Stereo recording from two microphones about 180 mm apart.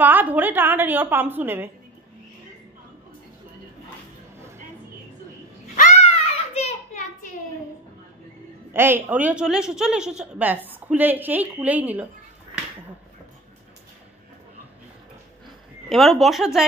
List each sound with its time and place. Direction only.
0.0 s a woman's voice: 10° right (ahead or behind)
5.9 s a sound: 35° left (ahead or behind)
8.7 s a woman's voice: 15° right (ahead or behind)
15.9 s speech: centre (ahead or behind)